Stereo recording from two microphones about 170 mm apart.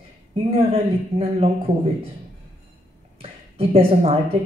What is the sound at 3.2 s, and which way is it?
A woman's voice, 35° right (ahead or behind).